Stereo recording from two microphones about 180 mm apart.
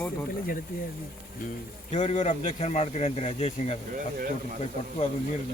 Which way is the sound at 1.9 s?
35° left (ahead or behind).